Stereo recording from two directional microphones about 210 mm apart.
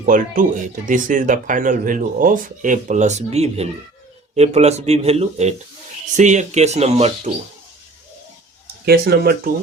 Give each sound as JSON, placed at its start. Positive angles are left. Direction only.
{"t": 0.0, "sound": "speech", "side_deg": -40}
{"t": 8.6, "sound": "speech", "side_deg": -50}